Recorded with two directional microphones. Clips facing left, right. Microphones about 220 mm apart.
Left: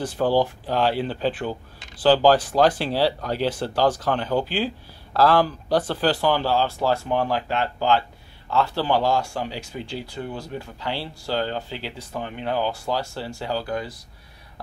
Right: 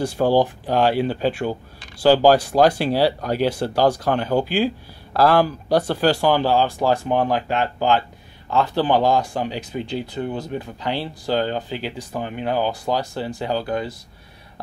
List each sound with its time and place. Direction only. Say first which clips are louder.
0.0 s speech: right 3 dB; 10° right (ahead or behind)